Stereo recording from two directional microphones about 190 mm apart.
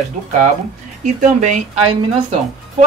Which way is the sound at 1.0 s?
40° right (ahead or behind).